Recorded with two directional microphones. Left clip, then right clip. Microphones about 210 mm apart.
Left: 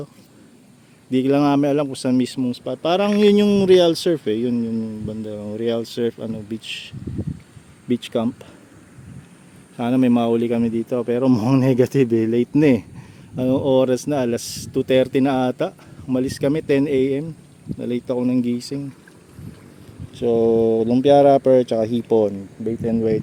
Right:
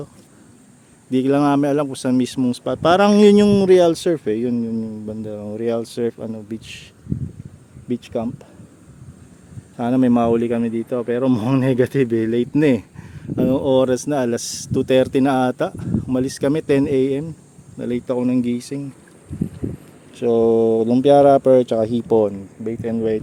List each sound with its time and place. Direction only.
1.1 s speech: centre (ahead or behind)
2.5 s speech: 20° right (ahead or behind); by 6.9 s 5° left (ahead or behind)
7.9 s speech: 15° left (ahead or behind)
9.7 s speech: centre (ahead or behind)
20.1 s speech: 5° right (ahead or behind)
22.6 s speech: 15° left (ahead or behind)